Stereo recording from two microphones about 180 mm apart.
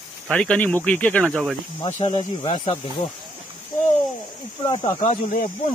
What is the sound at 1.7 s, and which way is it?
Speech, 25° left (ahead or behind).